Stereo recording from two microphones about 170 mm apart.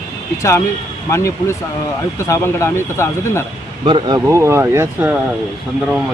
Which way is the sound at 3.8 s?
30° right (ahead or behind).